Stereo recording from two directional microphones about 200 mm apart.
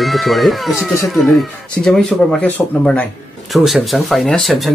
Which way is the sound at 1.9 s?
Centre (ahead or behind).